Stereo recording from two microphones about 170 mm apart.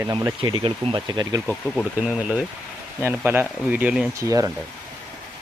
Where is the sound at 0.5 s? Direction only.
30° right (ahead or behind).